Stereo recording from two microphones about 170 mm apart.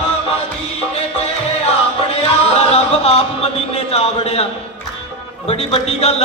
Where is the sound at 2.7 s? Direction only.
40° left (ahead or behind).